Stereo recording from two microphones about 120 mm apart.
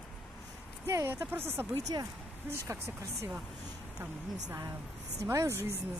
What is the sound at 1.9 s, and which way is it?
Speech, 40° right (ahead or behind).